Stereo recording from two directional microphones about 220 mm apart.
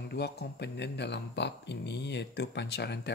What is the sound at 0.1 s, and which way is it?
Speech, 50° left (ahead or behind).